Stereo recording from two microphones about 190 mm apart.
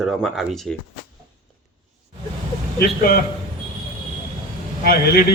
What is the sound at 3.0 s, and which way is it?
Speech, 50° left (ahead or behind).